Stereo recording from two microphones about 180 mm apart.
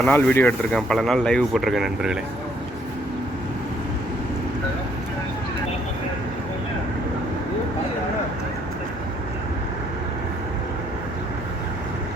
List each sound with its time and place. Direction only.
0.0 s speech: 10° left (ahead or behind)